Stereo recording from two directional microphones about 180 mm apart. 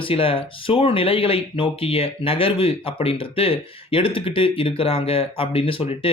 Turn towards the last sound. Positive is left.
turn(degrees=30)  # may be behind; listen again after turning